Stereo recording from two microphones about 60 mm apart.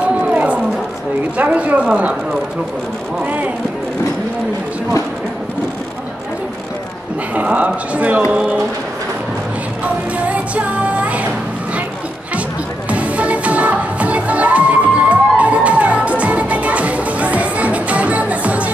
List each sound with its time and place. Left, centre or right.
0.3 s run: right
1.4 s speech: right
7.3 s speech: right
10.1 s music: right
12.9 s music: right